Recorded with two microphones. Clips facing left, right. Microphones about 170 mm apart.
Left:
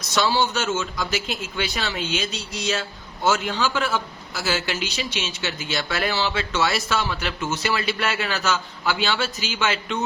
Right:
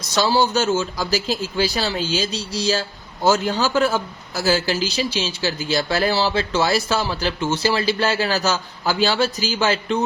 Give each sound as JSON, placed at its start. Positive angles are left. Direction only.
{"t": 0.1, "sound": "speech", "side_deg": -35}